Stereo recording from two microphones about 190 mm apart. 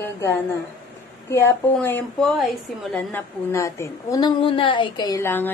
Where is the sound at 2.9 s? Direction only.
10° left (ahead or behind).